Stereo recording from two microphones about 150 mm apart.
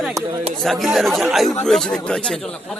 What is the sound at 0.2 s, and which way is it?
Speech, 20° right (ahead or behind).